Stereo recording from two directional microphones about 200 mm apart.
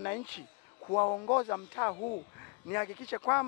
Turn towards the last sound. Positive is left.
turn(degrees=10)  # may be behind; listen again after turning